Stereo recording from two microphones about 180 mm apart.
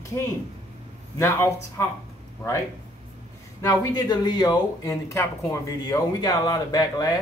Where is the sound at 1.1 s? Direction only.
15° left (ahead or behind).